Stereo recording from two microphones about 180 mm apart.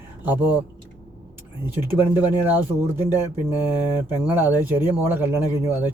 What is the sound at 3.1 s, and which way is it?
Speech, 20° left (ahead or behind).